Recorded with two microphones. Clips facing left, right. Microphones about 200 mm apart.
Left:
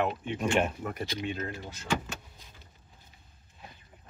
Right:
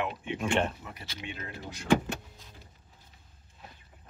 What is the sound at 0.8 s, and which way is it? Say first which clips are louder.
Speech: left 9 dB; 50° left (ahead or behind).